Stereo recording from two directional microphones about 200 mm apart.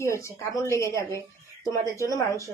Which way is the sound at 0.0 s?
15° left (ahead or behind).